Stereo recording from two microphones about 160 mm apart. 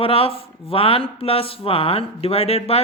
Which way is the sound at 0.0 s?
35° left (ahead or behind).